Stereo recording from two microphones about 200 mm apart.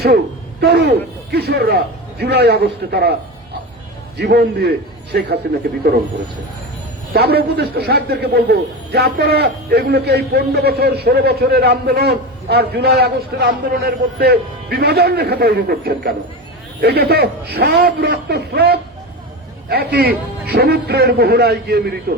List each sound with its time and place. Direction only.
0.6 s speech: 55° right (ahead or behind)
4.2 s a man's voice: 55° right (ahead or behind)
7.1 s a man's voice: 55° right (ahead or behind)